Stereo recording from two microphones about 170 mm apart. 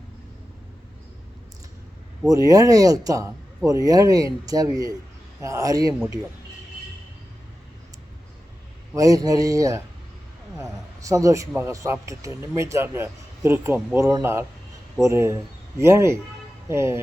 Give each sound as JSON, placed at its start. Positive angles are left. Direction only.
{"t": 2.3, "sound": "speech", "side_deg": -20}
{"t": 9.0, "sound": "a man's voice", "side_deg": -20}